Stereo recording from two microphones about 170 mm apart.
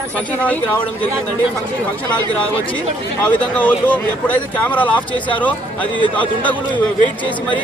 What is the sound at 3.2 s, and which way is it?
Speech, 10° left (ahead or behind).